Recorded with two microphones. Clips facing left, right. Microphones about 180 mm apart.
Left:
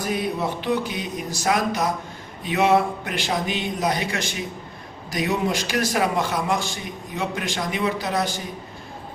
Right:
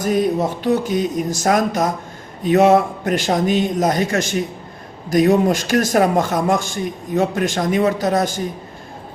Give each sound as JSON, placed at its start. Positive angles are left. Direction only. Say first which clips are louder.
{"t": 0.0, "sound": "a man's voice", "louder": "right 7 dB", "side_deg": -45}